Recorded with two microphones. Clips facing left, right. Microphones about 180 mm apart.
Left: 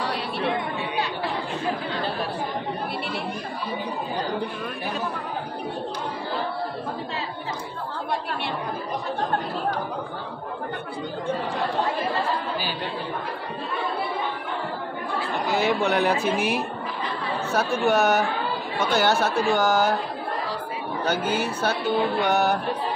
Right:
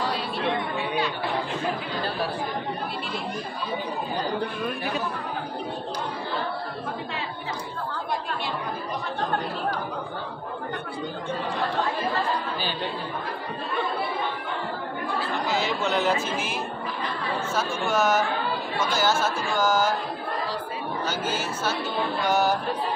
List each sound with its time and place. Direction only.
15.4 s speech: 55° left (ahead or behind)
21.0 s speech: 60° left (ahead or behind)